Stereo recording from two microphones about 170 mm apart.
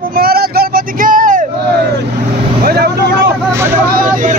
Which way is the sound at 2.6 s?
65° right (ahead or behind).